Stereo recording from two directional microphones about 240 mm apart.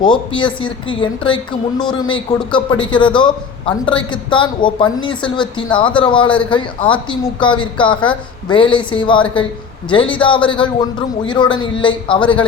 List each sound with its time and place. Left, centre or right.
0.0 s a woman's voice: centre